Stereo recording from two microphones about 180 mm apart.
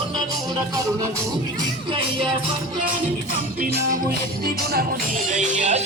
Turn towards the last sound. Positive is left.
turn(degrees=-40)  # may be behind; listen again after turning